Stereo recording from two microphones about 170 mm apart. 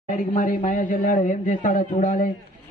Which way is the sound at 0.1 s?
45° left (ahead or behind).